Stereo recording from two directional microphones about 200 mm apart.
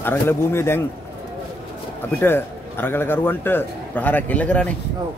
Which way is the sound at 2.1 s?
10° left (ahead or behind).